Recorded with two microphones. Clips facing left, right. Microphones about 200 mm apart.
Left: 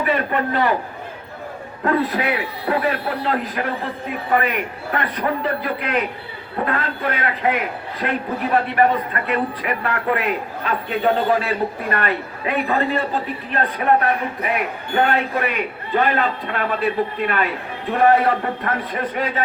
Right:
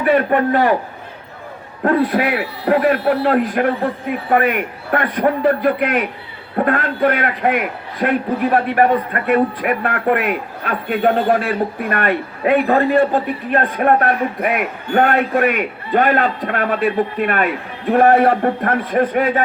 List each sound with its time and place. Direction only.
0.0 s a man's voice: 50° right (ahead or behind)
1.8 s a man's voice: 50° right (ahead or behind)